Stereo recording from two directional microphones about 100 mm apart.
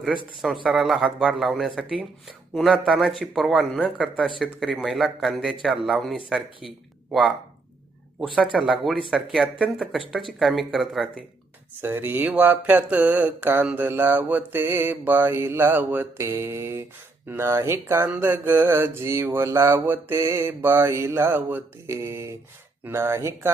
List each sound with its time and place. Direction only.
0.4 s speech: centre (ahead or behind)
8.5 s speech: centre (ahead or behind)
11.8 s mantra: 20° right (ahead or behind)
12.3 s speech: 15° right (ahead or behind)
13.7 s mantra: 20° right (ahead or behind)